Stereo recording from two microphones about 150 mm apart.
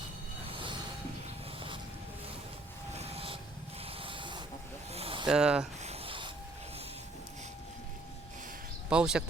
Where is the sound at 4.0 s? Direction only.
35° right (ahead or behind).